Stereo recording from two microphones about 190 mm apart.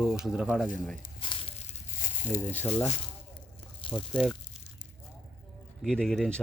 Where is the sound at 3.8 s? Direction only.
25° left (ahead or behind).